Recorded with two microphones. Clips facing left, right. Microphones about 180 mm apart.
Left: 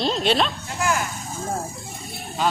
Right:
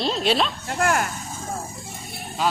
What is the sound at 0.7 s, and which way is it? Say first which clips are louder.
Speech: right 2 dB; 55° right (ahead or behind).